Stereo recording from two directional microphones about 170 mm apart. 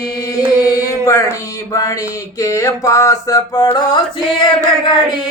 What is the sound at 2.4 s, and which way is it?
Music, 20° left (ahead or behind).